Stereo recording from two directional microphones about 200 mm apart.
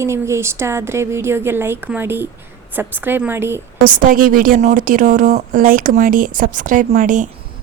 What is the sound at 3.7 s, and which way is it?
A woman's voice, 40° right (ahead or behind).